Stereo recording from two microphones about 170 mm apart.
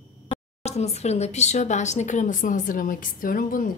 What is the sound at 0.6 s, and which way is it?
Speech, 40° left (ahead or behind).